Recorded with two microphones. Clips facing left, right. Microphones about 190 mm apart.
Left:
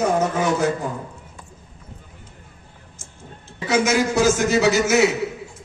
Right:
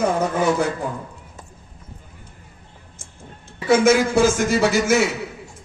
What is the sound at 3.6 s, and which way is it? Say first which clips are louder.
A man's voice: right 4 dB; 55° right (ahead or behind).